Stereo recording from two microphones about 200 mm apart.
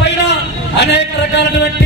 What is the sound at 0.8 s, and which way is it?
Speech, 60° left (ahead or behind).